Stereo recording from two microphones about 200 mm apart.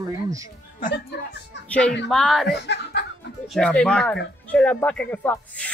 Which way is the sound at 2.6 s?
60° left (ahead or behind).